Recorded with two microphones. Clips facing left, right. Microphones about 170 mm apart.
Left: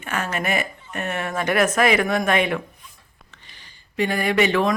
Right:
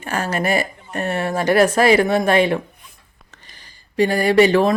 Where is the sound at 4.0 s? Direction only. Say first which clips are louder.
Right 6 dB; 35° right (ahead or behind).